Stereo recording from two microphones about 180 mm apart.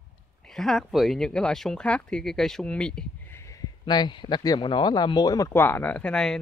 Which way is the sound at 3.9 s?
25° left (ahead or behind).